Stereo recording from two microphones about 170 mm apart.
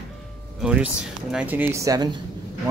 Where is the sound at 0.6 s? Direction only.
5° right (ahead or behind).